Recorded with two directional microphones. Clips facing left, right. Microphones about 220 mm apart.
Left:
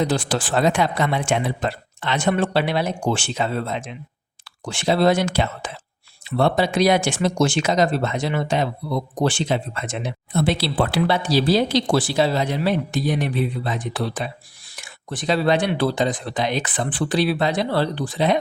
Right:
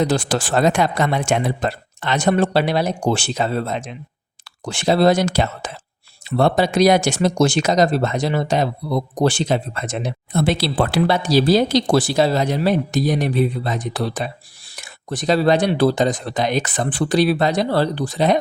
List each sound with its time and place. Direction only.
0.0 s speech: 45° right (ahead or behind)